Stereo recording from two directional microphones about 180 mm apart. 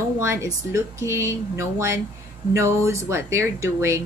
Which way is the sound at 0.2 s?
15° right (ahead or behind).